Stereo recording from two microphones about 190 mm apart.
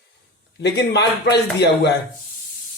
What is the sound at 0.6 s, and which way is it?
Speech, 60° left (ahead or behind).